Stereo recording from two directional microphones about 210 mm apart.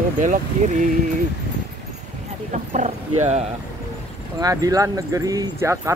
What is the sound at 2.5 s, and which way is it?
Horse, 35° right (ahead or behind).